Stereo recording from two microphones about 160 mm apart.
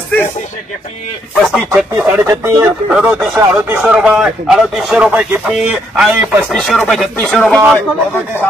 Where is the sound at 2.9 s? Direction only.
10° right (ahead or behind).